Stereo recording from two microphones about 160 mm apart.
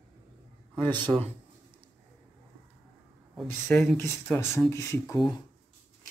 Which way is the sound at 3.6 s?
15° left (ahead or behind).